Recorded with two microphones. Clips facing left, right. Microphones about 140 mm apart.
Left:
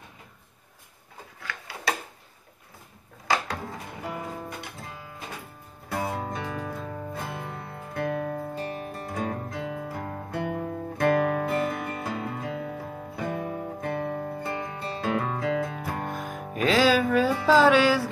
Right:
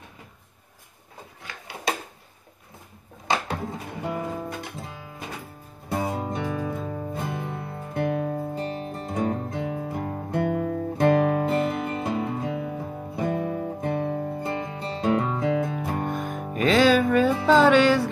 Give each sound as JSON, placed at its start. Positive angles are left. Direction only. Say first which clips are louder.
{"t": 1.4, "sound": "a sound", "louder": "right 1 dB", "side_deg": -20}
{"t": 3.3, "sound": "music", "louder": "right 1 dB", "side_deg": -25}
{"t": 5.9, "sound": "music", "louder": "right 3 dB", "side_deg": -20}
{"t": 10.4, "sound": "guitar", "louder": "right 6 dB", "side_deg": -25}
{"t": 16.1, "sound": "music", "louder": "right 4 dB", "side_deg": 0}